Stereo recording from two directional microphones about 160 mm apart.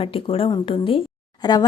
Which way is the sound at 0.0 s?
35° left (ahead or behind).